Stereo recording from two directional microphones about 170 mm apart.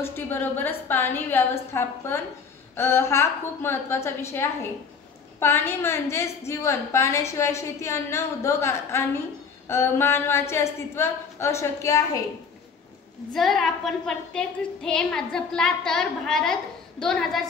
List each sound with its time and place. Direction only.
0.0 s a woman's voice: 10° left (ahead or behind)
13.3 s a woman's voice: centre (ahead or behind)